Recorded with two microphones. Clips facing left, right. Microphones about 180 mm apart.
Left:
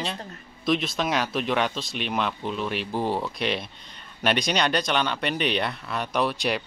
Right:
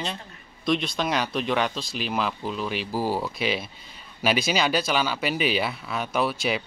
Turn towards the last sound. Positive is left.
turn(degrees=0)  # may be behind; listen again after turning